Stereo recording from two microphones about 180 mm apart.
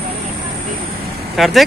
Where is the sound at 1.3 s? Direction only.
Centre (ahead or behind).